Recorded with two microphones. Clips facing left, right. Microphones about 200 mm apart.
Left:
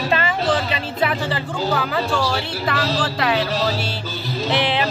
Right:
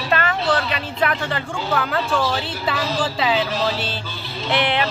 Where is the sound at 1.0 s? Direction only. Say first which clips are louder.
Even; 5° left (ahead or behind).